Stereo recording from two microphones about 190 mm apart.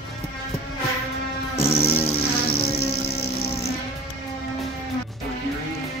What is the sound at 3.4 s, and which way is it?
Music, 30° left (ahead or behind).